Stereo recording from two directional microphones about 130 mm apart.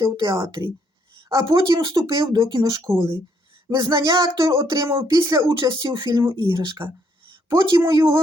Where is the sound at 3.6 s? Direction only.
30° right (ahead or behind).